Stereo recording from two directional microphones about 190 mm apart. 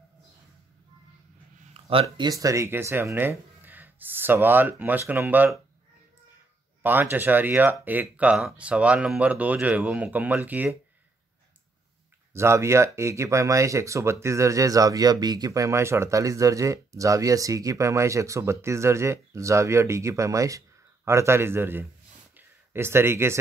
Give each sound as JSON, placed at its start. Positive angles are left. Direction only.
{"t": 1.7, "sound": "speech", "side_deg": -30}
{"t": 6.8, "sound": "speech", "side_deg": -10}
{"t": 12.4, "sound": "speech", "side_deg": -15}
{"t": 22.4, "sound": "a sound", "side_deg": -10}